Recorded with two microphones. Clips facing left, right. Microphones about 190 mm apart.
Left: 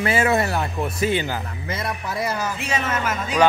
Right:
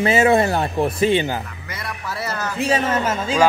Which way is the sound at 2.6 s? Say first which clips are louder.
Right 8 dB; 35° right (ahead or behind).